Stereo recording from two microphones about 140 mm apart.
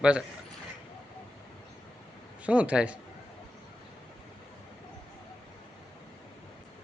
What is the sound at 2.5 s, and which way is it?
Speech, 10° right (ahead or behind).